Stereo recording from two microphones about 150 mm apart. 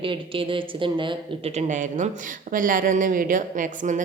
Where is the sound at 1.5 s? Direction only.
50° right (ahead or behind).